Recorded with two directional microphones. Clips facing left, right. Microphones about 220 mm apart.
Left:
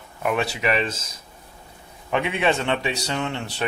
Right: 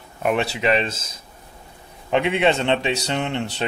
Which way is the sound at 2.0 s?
25° right (ahead or behind).